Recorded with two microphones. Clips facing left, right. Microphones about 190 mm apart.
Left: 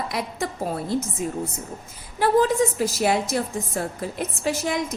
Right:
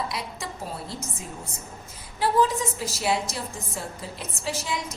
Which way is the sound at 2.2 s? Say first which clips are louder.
Left 4 dB; 50° left (ahead or behind).